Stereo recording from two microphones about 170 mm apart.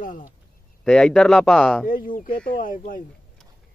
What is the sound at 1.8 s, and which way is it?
Speech, 55° left (ahead or behind).